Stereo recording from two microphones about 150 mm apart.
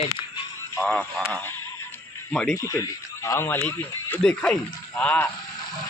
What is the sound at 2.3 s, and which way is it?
Speech, 5° left (ahead or behind).